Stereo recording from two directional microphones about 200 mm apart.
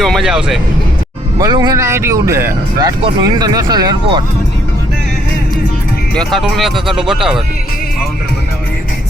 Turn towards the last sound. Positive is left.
turn(degrees=0)  # may be behind; listen again after turning